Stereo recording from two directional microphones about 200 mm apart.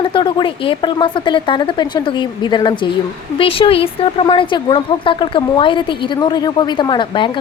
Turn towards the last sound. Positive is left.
turn(degrees=25)  # may be behind; listen again after turning